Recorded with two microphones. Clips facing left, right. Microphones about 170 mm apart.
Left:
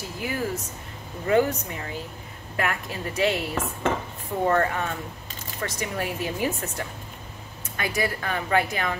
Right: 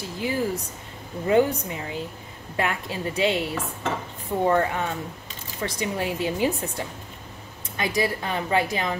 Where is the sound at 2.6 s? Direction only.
20° right (ahead or behind).